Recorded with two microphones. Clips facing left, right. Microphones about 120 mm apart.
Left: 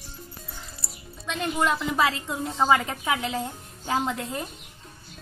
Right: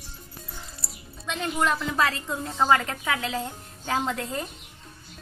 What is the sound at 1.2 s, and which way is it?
A woman's voice, 5° left (ahead or behind).